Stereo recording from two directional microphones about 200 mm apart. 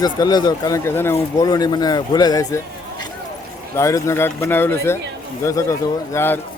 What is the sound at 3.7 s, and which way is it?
A man's voice, 15° left (ahead or behind).